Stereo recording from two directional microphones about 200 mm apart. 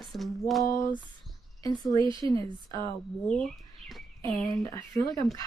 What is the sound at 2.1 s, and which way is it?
Speech, 25° right (ahead or behind).